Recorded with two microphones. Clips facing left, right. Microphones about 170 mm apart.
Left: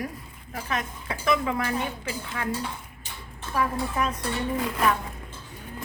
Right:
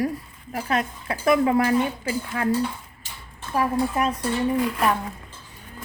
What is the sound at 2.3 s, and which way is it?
Dishes, 40° right (ahead or behind).